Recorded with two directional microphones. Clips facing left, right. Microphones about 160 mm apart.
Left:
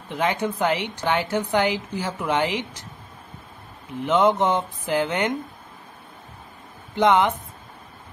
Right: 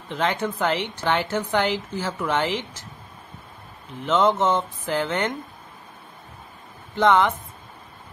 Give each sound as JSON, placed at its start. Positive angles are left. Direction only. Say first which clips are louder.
{"t": 0.1, "sound": "a woman's voice", "louder": "left 1 dB", "side_deg": 15}
{"t": 4.0, "sound": "a woman's voice", "louder": "left 1 dB", "side_deg": 15}
{"t": 7.0, "sound": "a woman's voice", "louder": "even", "side_deg": 15}